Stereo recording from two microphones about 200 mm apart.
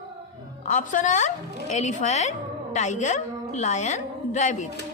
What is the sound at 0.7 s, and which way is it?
A woman's voice, 40° left (ahead or behind).